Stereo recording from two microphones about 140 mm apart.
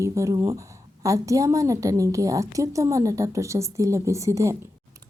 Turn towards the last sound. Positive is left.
turn(degrees=-20)  # may be behind; listen again after turning